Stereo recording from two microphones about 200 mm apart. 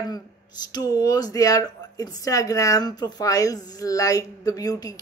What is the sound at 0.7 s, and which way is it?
A woman's voice, 20° left (ahead or behind).